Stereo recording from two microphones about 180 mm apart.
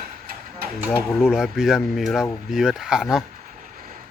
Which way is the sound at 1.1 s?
5° right (ahead or behind).